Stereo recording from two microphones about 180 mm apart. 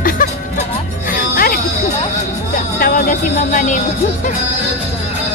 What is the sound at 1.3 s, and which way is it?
Music, 55° left (ahead or behind).